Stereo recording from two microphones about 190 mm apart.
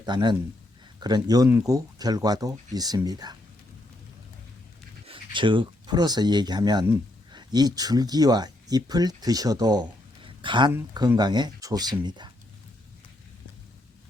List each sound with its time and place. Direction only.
0.0 s speech: 25° right (ahead or behind)
5.0 s speech: 25° right (ahead or behind)